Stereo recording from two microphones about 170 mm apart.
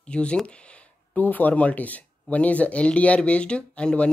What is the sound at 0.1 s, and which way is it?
Speech, 5° left (ahead or behind).